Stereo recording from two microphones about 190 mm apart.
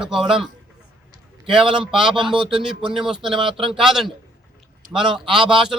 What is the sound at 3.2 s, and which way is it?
Speech, 25° right (ahead or behind).